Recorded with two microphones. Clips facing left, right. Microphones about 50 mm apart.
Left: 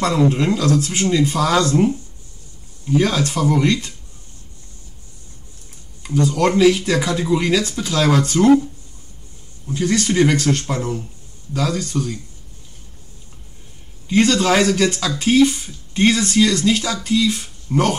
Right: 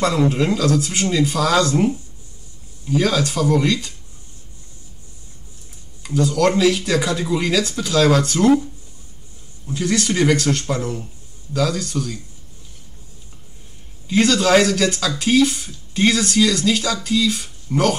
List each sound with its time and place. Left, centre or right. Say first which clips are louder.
0.1 s speech: left 1 dB; centre
3.0 s speech: even; centre
6.0 s speech: even; centre
10.0 s speech: left 1 dB; centre
14.2 s speech: right 1 dB; centre